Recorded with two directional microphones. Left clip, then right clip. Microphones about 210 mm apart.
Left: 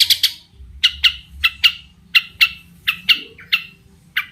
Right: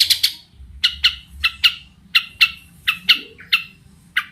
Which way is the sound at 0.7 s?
20° left (ahead or behind).